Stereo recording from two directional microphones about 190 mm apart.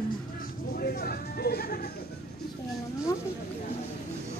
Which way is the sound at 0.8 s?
55° left (ahead or behind).